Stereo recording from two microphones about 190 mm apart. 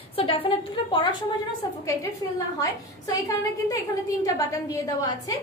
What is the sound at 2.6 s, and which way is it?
A woman's voice, 20° left (ahead or behind).